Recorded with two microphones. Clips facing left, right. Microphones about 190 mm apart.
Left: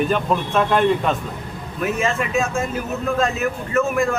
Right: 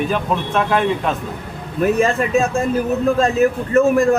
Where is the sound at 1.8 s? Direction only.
35° right (ahead or behind).